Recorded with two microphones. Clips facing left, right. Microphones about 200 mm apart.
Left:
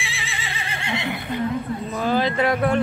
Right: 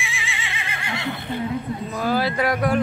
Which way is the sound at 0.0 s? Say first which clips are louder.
Right 1 dB; 35° left (ahead or behind).